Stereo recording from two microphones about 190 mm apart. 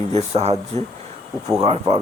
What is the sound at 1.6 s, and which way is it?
Speech, 35° right (ahead or behind).